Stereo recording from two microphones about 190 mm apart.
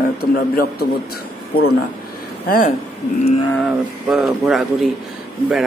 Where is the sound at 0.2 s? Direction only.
55° left (ahead or behind).